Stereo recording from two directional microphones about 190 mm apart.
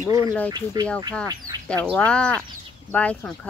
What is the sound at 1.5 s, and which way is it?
Bird, 25° right (ahead or behind).